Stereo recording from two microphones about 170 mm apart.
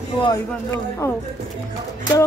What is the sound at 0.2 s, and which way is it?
Speech, 20° left (ahead or behind).